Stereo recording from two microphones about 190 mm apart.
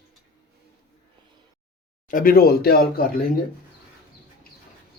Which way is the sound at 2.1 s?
50° left (ahead or behind).